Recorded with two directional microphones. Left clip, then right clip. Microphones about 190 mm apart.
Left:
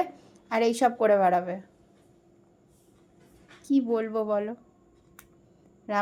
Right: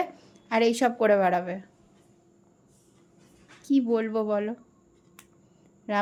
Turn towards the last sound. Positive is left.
turn(degrees=-15)  # may be behind; listen again after turning